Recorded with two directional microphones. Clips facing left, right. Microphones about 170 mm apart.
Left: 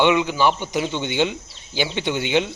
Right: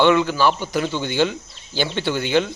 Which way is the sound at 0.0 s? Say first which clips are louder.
Right 1 dB; 15° left (ahead or behind).